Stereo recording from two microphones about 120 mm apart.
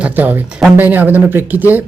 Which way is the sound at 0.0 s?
15° right (ahead or behind).